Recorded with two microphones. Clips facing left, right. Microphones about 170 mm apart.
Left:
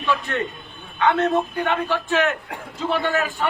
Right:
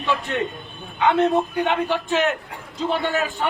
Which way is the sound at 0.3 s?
20° right (ahead or behind).